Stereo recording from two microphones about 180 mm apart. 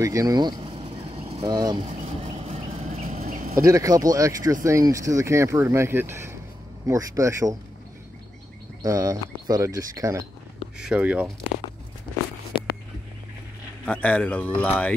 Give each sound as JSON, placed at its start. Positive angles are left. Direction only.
{"t": 0.0, "sound": "a sound", "side_deg": -20}
{"t": 1.4, "sound": "speech", "side_deg": -20}
{"t": 1.9, "sound": "a sound", "side_deg": -35}
{"t": 3.6, "sound": "speech", "side_deg": -20}
{"t": 8.8, "sound": "speech", "side_deg": -20}
{"t": 10.8, "sound": "speech", "side_deg": -5}
{"t": 13.8, "sound": "speech", "side_deg": 10}